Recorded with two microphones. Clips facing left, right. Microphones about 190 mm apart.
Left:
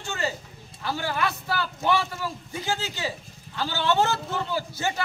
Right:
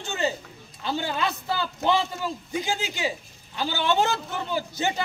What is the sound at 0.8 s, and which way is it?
A man's voice, 20° right (ahead or behind).